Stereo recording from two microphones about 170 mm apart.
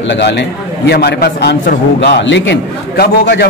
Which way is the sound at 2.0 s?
85° left.